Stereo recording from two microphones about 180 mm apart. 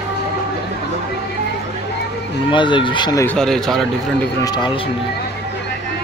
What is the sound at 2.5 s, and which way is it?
Speech, 25° left (ahead or behind).